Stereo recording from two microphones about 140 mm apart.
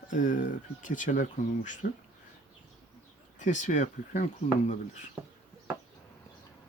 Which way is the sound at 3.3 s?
60° left (ahead or behind).